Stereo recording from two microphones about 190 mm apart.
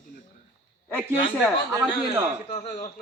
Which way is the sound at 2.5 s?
35° left (ahead or behind).